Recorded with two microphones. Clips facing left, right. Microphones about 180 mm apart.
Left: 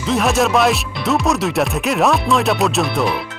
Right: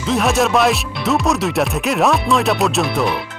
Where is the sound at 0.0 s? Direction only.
Centre (ahead or behind).